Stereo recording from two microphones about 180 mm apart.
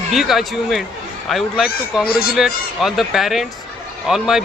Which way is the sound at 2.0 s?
60° left (ahead or behind).